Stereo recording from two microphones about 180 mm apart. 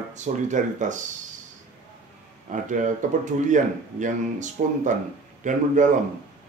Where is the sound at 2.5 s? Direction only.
45° right (ahead or behind).